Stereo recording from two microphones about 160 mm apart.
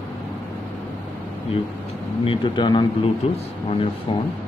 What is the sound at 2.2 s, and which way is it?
Speech, 30° left (ahead or behind).